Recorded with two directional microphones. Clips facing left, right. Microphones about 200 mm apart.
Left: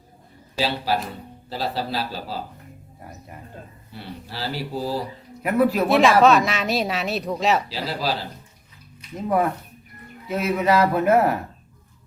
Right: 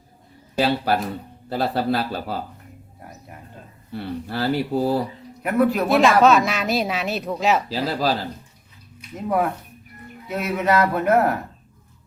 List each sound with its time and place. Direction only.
0.5 s a man's voice: 55° right (ahead or behind)
3.9 s speech: 55° right (ahead or behind)
5.4 s speech: centre (ahead or behind)
7.7 s speech: 45° right (ahead or behind)
9.1 s speech: centre (ahead or behind)